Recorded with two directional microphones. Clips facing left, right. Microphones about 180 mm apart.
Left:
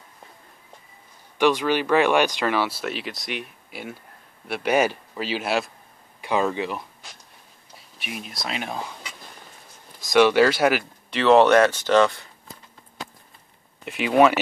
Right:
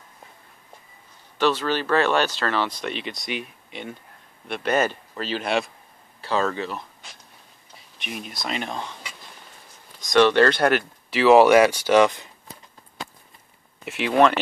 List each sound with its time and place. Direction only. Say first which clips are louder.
1.4 s speech: left 2 dB; 15° left (ahead or behind)
6.2 s speech: left 1 dB; 15° left (ahead or behind)
8.0 s speech: right 1 dB; centre (ahead or behind)
9.9 s speech: even; 5° left (ahead or behind); by 12.3 s 15° right (ahead or behind)
13.8 s speech: left 1 dB; centre (ahead or behind)